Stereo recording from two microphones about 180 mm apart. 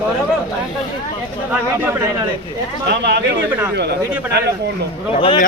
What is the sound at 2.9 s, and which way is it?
Speech, 70° right (ahead or behind).